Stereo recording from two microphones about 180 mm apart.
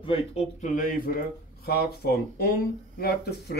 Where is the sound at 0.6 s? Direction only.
50° left (ahead or behind).